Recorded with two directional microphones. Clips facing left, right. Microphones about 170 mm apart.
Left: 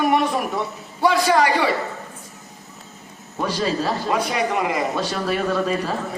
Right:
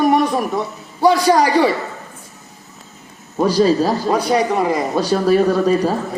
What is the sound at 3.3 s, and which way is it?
A man's voice, 40° right (ahead or behind).